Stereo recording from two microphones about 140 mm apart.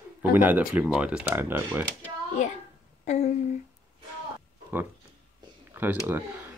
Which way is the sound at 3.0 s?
55° left (ahead or behind).